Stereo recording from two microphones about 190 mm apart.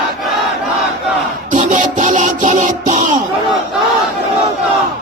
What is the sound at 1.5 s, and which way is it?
Music, 40° right (ahead or behind).